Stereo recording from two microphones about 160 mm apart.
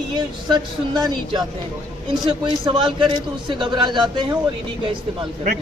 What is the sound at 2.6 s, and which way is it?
A woman's voice, 30° right (ahead or behind).